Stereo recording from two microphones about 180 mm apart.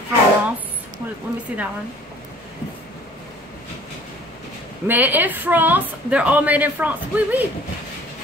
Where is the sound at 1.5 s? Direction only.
10° right (ahead or behind).